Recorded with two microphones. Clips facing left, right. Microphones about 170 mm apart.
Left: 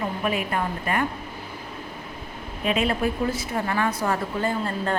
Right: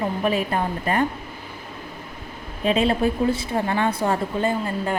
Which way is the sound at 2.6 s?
30° right (ahead or behind).